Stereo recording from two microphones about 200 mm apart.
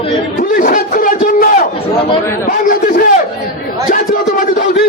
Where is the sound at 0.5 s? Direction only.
45° left (ahead or behind).